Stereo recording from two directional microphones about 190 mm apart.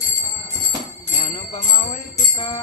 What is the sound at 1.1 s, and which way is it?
Jingle bell, 35° left (ahead or behind).